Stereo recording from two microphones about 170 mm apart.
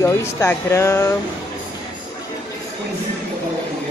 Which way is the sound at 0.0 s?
15° left (ahead or behind).